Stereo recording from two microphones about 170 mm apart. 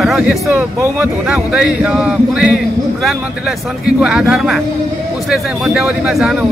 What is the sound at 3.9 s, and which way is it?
Speech, 5° right (ahead or behind).